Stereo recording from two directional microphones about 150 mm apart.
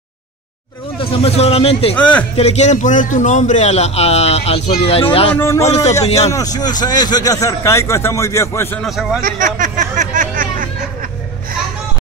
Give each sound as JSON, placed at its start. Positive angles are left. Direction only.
{"t": 0.9, "sound": "a man's voice", "side_deg": 40}
{"t": 2.0, "sound": "a man's voice", "side_deg": 10}
{"t": 2.3, "sound": "a man's voice", "side_deg": 45}
{"t": 6.3, "sound": "a man's voice", "side_deg": 25}
{"t": 8.8, "sound": "a man's voice", "side_deg": 0}
{"t": 9.2, "sound": "a sound", "side_deg": -60}